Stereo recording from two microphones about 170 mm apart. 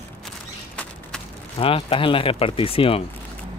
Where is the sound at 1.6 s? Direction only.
30° left (ahead or behind).